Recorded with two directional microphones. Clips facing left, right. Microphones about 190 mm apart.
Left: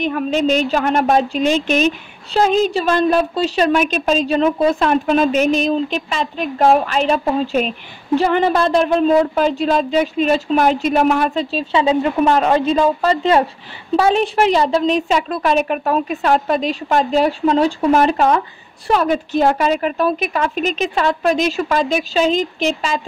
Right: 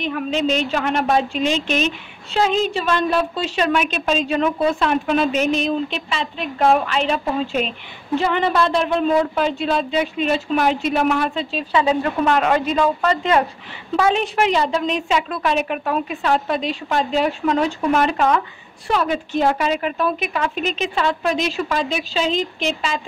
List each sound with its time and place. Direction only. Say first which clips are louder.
0.0 s a woman's voice: left 4 dB; 45° left (ahead or behind)
11.7 s speech: left 3 dB; 25° left (ahead or behind)
12.3 s a woman's voice: left 1 dB; 30° left (ahead or behind)